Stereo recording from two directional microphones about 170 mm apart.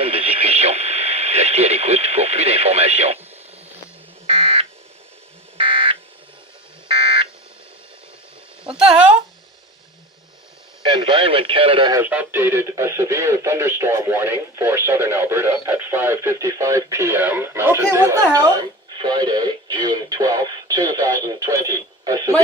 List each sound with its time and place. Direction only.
0.0 s radio: 35° right (ahead or behind)
4.3 s buzzer: 35° right (ahead or behind)
10.8 s speech: 30° right (ahead or behind)
11.9 s speech: 10° right (ahead or behind)